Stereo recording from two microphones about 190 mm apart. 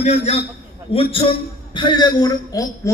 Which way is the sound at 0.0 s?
35° left (ahead or behind).